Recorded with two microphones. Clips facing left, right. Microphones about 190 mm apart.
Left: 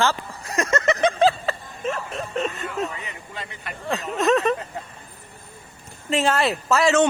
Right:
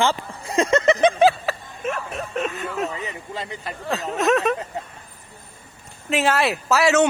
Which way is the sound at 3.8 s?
Centre (ahead or behind).